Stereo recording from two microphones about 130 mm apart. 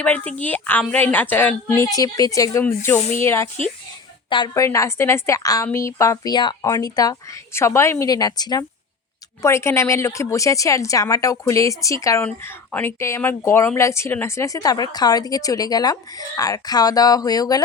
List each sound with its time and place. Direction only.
0.3 s a woman's voice: 10° left (ahead or behind)
4.3 s a woman's voice: 35° left (ahead or behind)
4.5 s a woman's voice: 25° left (ahead or behind)